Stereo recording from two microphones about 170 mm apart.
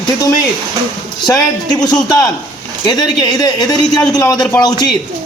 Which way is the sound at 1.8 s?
25° left (ahead or behind).